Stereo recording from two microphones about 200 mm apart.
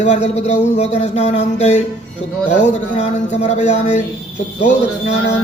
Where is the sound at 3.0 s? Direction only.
35° left (ahead or behind).